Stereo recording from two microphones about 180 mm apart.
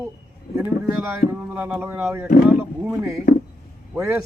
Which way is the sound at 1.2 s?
50° left (ahead or behind).